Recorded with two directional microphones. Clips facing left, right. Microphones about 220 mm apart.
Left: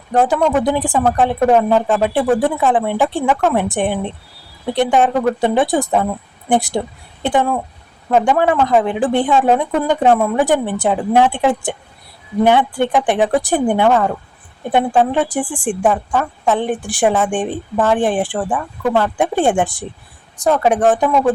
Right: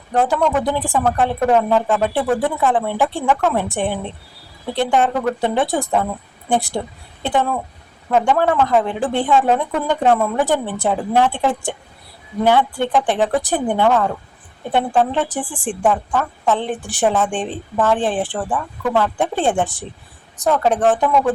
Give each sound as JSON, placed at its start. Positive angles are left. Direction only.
{"t": 0.1, "sound": "a woman's voice", "side_deg": 15}